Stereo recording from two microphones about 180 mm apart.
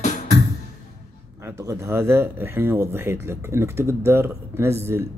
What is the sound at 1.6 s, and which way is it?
Speech, 15° right (ahead or behind).